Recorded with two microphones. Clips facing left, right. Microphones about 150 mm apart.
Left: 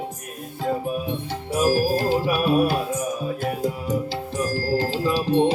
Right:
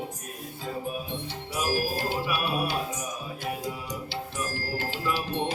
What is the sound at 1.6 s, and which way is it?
Music, 40° left (ahead or behind).